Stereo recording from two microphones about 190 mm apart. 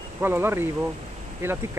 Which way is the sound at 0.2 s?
10° right (ahead or behind).